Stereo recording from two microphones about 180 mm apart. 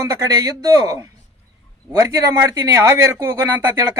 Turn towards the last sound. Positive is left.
turn(degrees=-15)  # may be behind; listen again after turning